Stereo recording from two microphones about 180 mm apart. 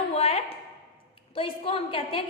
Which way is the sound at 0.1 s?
35° left (ahead or behind).